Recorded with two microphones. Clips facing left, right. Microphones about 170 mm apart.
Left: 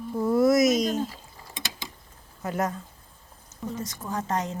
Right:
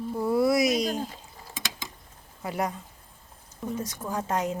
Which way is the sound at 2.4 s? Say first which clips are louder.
Left 2 dB; 10° right (ahead or behind).